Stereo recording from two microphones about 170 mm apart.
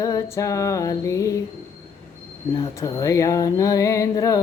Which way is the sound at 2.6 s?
20° left (ahead or behind).